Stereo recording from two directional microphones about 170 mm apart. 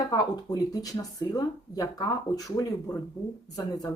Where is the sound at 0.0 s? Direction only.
25° left (ahead or behind).